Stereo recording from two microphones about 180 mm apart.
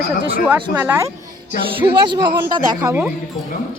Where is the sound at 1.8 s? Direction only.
25° right (ahead or behind).